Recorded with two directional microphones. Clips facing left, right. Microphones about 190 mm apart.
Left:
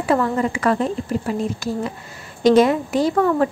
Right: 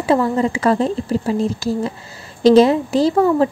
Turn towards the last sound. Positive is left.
turn(degrees=-30)  # may be behind; listen again after turning